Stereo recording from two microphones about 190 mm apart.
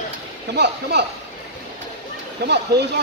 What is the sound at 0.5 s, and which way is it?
Speech, 65° right (ahead or behind).